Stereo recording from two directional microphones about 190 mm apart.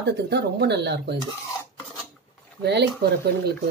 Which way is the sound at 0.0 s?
60° right (ahead or behind).